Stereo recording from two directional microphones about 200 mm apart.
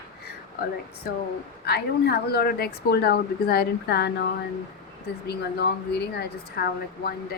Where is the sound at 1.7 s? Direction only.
55° left (ahead or behind).